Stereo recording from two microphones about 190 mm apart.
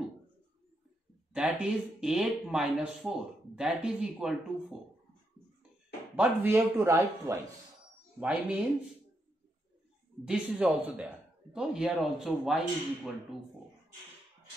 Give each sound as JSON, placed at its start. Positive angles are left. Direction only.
{"t": 1.3, "sound": "speech", "side_deg": -5}
{"t": 6.1, "sound": "a man's voice", "side_deg": -10}
{"t": 10.2, "sound": "speech", "side_deg": -5}